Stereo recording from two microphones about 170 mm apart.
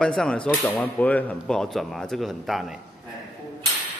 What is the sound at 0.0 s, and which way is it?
Speech, 5° left (ahead or behind).